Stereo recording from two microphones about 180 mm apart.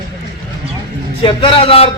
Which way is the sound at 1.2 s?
30° left (ahead or behind).